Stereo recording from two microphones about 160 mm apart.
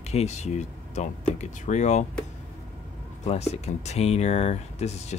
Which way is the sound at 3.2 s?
40° left (ahead or behind).